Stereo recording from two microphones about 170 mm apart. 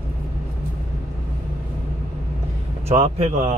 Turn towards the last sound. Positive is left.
turn(degrees=-40)  # may be behind; listen again after turning